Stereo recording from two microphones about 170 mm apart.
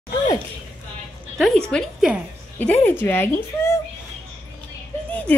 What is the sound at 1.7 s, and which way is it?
Speech, centre (ahead or behind).